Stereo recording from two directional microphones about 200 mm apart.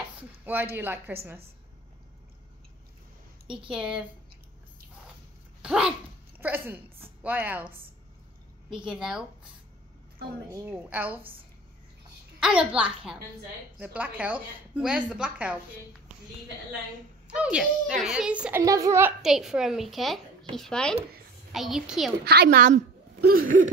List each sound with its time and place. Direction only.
0.5 s a woman's voice: 10° right (ahead or behind)
3.7 s a child's voice: 5° right (ahead or behind)
5.6 s a woman's voice: 5° right (ahead or behind)
10.7 s a woman's voice: 10° right (ahead or behind)
12.4 s a child's voice: 5° right (ahead or behind)
17.3 s a child's voice: 5° right (ahead or behind)
22.2 s a woman's voice: 55° right (ahead or behind)